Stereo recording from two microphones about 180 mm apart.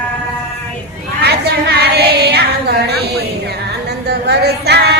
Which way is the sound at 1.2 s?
65° right (ahead or behind).